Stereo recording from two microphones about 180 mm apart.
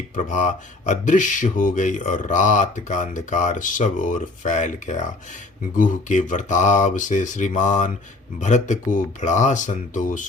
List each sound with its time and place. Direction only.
0.2 s speech: 45° left (ahead or behind)